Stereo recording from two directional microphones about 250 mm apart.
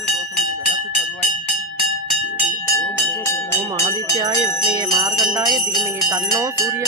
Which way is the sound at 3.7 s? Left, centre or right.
Centre.